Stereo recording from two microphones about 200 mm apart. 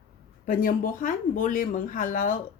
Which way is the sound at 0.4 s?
45° left (ahead or behind).